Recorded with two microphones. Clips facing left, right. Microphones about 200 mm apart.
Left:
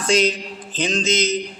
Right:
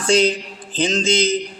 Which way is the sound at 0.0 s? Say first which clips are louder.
Right 2 dB; 30° right (ahead or behind).